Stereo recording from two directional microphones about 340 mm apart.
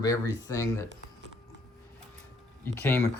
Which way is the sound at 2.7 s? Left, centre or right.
Centre.